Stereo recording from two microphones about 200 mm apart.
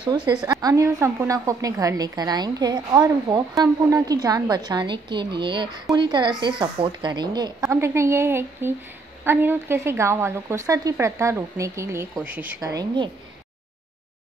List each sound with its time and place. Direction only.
0.6 s a woman's voice: 15° right (ahead or behind)